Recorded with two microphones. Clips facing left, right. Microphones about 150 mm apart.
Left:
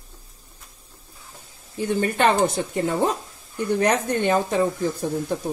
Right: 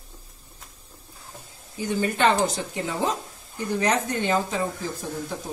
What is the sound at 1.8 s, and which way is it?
Speech, 55° left (ahead or behind).